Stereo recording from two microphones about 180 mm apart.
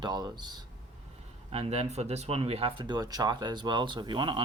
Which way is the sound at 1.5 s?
35° right (ahead or behind).